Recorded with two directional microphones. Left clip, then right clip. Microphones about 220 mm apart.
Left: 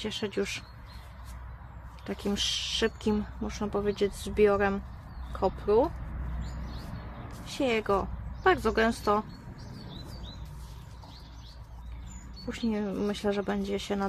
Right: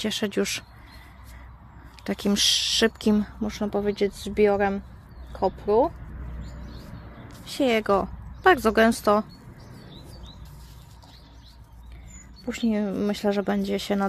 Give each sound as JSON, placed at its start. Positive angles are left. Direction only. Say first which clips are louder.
{"t": 0.0, "sound": "speech", "louder": "right 6 dB", "side_deg": -50}
{"t": 2.0, "sound": "speech", "louder": "right 8 dB", "side_deg": -45}
{"t": 7.4, "sound": "speech", "louder": "right 6 dB", "side_deg": -40}
{"t": 12.4, "sound": "speech", "louder": "right 5 dB", "side_deg": -40}